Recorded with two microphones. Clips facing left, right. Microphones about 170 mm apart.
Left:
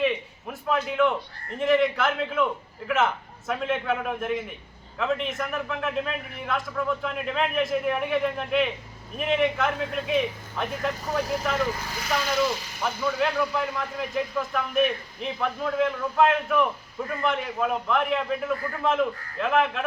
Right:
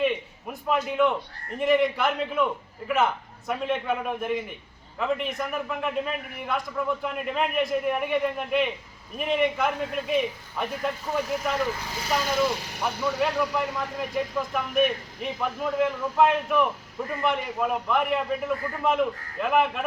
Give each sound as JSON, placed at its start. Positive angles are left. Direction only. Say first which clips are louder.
{"t": 0.0, "sound": "a man's voice", "louder": "even", "side_deg": -5}
{"t": 11.1, "sound": "speech", "louder": "left 1 dB", "side_deg": 35}
{"t": 11.6, "sound": "speech", "louder": "left 1 dB", "side_deg": -20}
{"t": 12.4, "sound": "speech", "louder": "even", "side_deg": -60}
{"t": 13.1, "sound": "a man's voice", "louder": "even", "side_deg": 0}